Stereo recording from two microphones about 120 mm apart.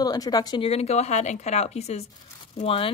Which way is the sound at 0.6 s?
60° left (ahead or behind).